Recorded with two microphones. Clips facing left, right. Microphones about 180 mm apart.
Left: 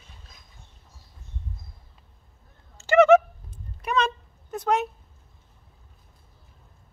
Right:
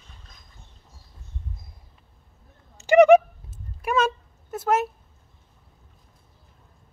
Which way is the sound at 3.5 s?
5° right (ahead or behind).